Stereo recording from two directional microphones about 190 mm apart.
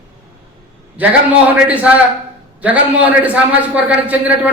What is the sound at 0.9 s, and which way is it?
A man's voice, 10° right (ahead or behind).